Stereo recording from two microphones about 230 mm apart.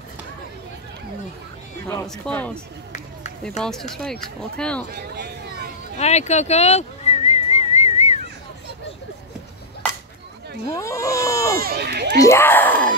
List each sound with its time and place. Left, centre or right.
1.9 s speech: centre
4.9 s a sound: right
5.9 s whistling: left
10.7 s baby cry: centre
11.6 s speech: right
12.2 s speech: centre